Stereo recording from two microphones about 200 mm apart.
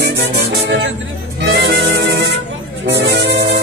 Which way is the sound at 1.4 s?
55° right (ahead or behind).